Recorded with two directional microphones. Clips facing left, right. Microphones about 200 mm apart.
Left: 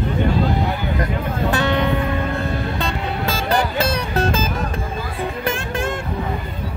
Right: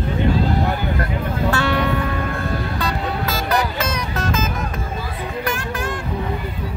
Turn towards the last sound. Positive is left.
turn(degrees=25)  # may be behind; listen again after turning